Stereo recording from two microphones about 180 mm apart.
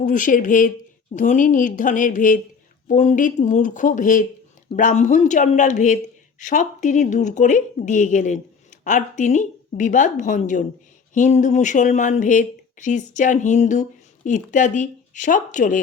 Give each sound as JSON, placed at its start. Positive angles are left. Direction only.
{"t": 0.0, "sound": "speech", "side_deg": 45}